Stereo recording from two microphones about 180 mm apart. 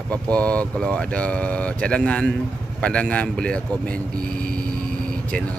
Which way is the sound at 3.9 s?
50° right (ahead or behind).